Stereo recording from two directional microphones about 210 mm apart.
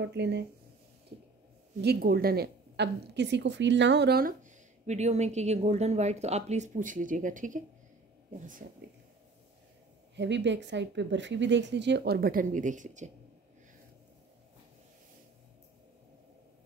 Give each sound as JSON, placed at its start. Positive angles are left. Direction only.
{"t": 0.0, "sound": "speech", "side_deg": -55}
{"t": 1.8, "sound": "a woman's voice", "side_deg": -50}
{"t": 10.1, "sound": "speech", "side_deg": -55}